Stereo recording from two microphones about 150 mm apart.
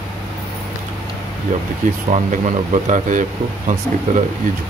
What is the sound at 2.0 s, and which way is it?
Speech, 50° right (ahead or behind).